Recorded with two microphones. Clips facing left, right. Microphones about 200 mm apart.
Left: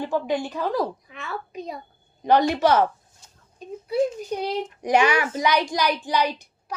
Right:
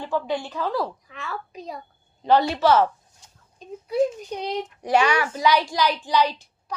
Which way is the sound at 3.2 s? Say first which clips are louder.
Right 1 dB; 15° right (ahead or behind).